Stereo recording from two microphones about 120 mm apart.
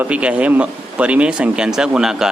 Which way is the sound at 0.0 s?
10° right (ahead or behind).